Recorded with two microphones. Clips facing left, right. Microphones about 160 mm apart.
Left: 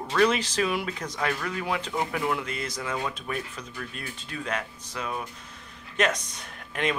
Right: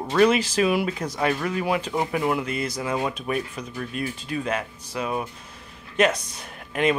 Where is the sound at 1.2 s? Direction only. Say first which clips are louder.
Right 5 dB; 25° right (ahead or behind).